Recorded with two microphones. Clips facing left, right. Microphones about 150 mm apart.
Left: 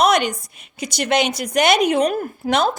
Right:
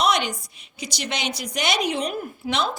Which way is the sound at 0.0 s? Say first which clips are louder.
Left 6 dB; 45° left (ahead or behind).